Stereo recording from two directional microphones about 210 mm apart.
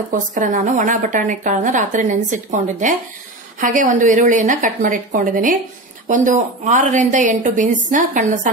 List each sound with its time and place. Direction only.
0.1 s a woman's voice: 35° right (ahead or behind)